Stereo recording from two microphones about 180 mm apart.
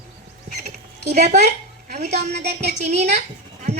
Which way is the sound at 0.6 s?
40° right (ahead or behind).